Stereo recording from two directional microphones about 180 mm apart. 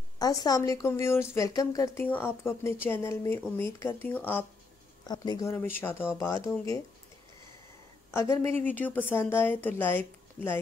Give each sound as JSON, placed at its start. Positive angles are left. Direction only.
{"t": 0.2, "sound": "a woman's voice", "side_deg": 20}
{"t": 5.0, "sound": "a woman's voice", "side_deg": 25}
{"t": 8.1, "sound": "a woman's voice", "side_deg": 15}